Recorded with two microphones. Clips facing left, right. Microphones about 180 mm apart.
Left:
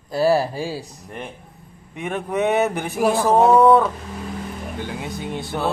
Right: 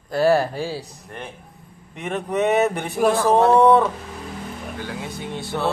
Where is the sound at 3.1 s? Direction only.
15° left (ahead or behind).